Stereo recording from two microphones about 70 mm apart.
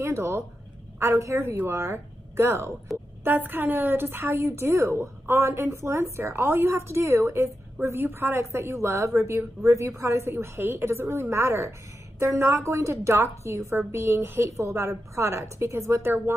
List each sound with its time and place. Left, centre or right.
0.0 s a woman's voice: right
2.9 s a woman's voice: centre
3.3 s a woman's voice: right
14.6 s a woman's voice: right